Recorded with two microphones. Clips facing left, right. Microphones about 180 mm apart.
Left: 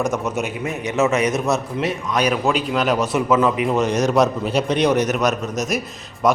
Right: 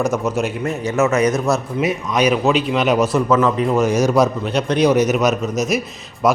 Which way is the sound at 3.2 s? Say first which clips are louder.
Right 2 dB; 10° left (ahead or behind).